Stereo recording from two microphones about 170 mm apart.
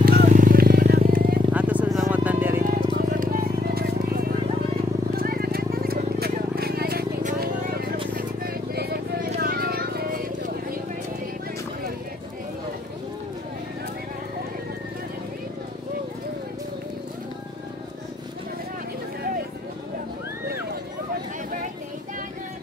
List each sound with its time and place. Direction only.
0.0 s vehicle: 60° right (ahead or behind)
1.5 s vehicle: 10° right (ahead or behind)
2.6 s hubbub: 55° right (ahead or behind)
5.1 s a sound: 60° right (ahead or behind)